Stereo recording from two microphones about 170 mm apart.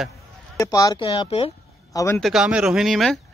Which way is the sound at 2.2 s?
5° right (ahead or behind).